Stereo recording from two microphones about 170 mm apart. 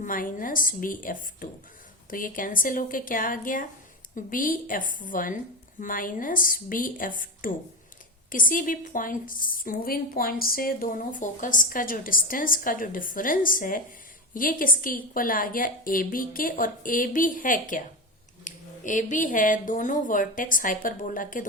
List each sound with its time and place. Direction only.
0.0 s a woman's voice: 50° left (ahead or behind)